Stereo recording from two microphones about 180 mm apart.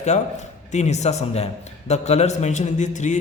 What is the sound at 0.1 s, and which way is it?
A man's voice, 40° left (ahead or behind).